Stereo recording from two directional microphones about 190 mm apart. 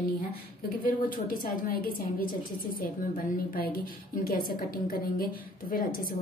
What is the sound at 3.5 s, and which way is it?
A woman's voice, 50° left (ahead or behind).